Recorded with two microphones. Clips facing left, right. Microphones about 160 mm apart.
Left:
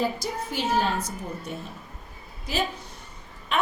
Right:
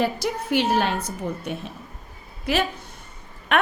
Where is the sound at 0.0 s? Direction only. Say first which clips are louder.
Right 4 dB; 70° right (ahead or behind).